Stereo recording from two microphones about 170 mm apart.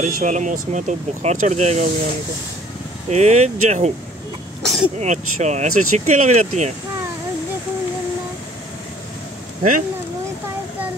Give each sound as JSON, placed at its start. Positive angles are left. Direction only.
{"t": 0.0, "sound": "speech", "side_deg": -45}
{"t": 3.1, "sound": "speech", "side_deg": -40}
{"t": 4.6, "sound": "speech", "side_deg": 0}
{"t": 4.9, "sound": "speech", "side_deg": -40}
{"t": 9.6, "sound": "speech", "side_deg": -50}